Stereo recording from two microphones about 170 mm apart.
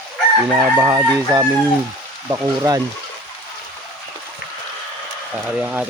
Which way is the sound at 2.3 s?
20° right (ahead or behind).